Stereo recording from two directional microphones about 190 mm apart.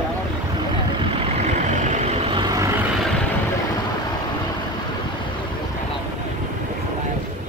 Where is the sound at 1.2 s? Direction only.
35° right (ahead or behind).